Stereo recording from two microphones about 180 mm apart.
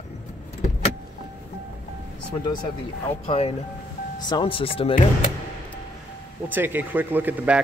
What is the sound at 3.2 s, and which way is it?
Speech, 35° left (ahead or behind).